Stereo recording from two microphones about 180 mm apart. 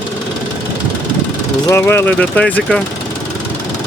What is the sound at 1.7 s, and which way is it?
Speech, 15° left (ahead or behind).